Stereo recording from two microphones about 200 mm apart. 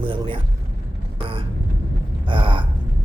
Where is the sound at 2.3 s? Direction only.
25° right (ahead or behind).